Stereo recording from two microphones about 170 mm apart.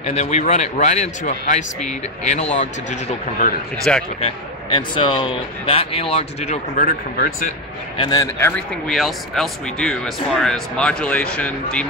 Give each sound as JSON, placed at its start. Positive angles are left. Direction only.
{"t": 0.0, "sound": "speech", "side_deg": 40}
{"t": 3.9, "sound": "speech", "side_deg": 5}
{"t": 4.2, "sound": "speech", "side_deg": 30}
{"t": 7.2, "sound": "speech", "side_deg": 55}
{"t": 8.0, "sound": "speech", "side_deg": 20}